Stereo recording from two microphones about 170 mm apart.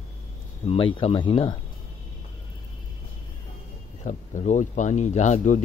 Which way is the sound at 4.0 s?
45° left (ahead or behind).